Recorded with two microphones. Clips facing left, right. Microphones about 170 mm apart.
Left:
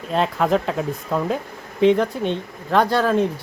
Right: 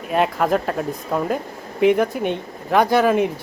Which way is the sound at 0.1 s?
5° right (ahead or behind).